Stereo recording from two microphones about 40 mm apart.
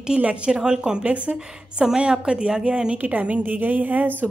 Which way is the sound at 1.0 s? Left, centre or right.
Right.